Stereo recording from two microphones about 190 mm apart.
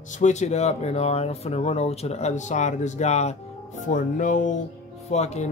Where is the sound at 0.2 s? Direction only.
35° left (ahead or behind).